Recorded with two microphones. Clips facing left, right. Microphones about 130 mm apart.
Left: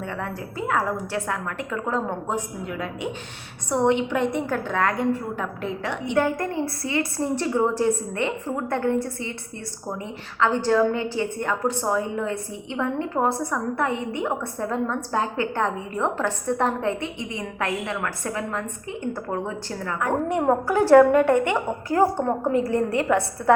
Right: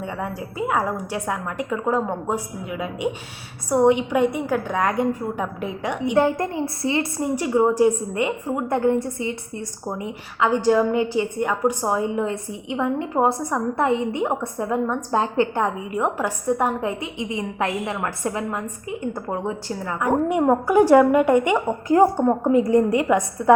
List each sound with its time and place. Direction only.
0.0 s a woman's voice: 15° right (ahead or behind)
6.1 s a woman's voice: 25° right (ahead or behind)
7.2 s a woman's voice: 10° right (ahead or behind)
15.6 s a woman's voice: 10° right (ahead or behind)